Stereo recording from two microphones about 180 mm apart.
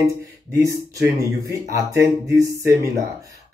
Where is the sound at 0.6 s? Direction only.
15° right (ahead or behind).